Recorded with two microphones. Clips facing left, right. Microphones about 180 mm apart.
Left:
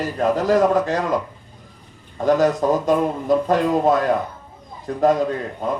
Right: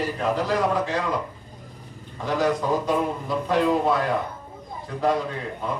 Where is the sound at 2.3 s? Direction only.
45° left (ahead or behind).